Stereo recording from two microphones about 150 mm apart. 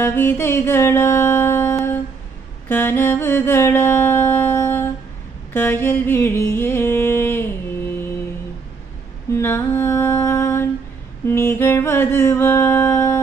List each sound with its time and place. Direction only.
0.0 s music: 15° left (ahead or behind)
5.5 s a sound: 15° left (ahead or behind)
9.3 s music: 15° left (ahead or behind)